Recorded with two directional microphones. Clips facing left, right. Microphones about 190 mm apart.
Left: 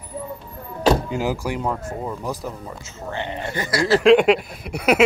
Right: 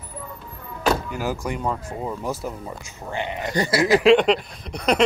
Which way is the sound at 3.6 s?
25° right (ahead or behind).